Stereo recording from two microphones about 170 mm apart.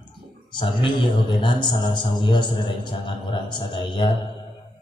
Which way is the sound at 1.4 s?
25° left (ahead or behind).